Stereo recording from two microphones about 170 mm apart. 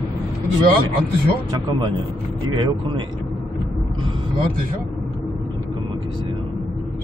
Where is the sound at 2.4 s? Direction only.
30° right (ahead or behind).